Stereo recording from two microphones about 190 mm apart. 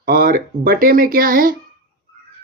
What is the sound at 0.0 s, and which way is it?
Speech, 50° right (ahead or behind).